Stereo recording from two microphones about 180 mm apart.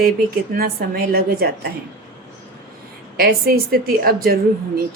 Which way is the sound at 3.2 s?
55° right (ahead or behind).